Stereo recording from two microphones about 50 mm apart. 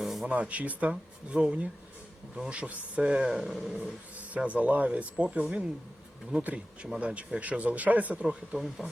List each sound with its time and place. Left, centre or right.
0.0 s a sound: centre
0.3 s speech: right
3.3 s speech: centre
4.4 s speech: right
8.5 s speech: centre